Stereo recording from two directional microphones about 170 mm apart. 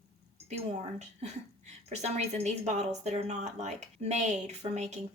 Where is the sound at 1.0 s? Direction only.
40° right (ahead or behind).